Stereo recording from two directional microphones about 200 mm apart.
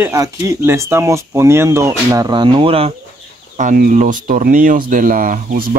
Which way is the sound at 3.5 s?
40° right (ahead or behind).